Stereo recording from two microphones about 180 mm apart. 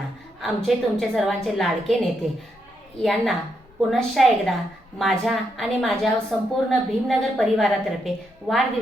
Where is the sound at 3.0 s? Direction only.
Centre (ahead or behind).